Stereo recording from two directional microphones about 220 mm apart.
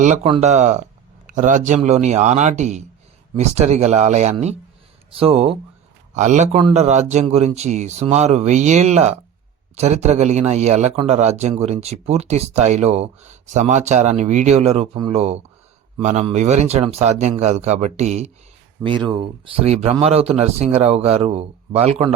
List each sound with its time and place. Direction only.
0.0 s a man's voice: 30° right (ahead or behind)